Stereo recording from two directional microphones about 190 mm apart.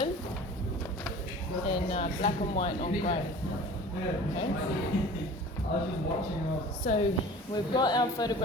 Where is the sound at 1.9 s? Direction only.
30° left (ahead or behind).